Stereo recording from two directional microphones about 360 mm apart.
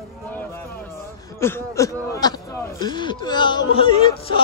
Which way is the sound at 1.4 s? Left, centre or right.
Centre.